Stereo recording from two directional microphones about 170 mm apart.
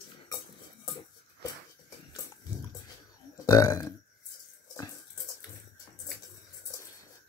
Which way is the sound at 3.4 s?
20° left (ahead or behind).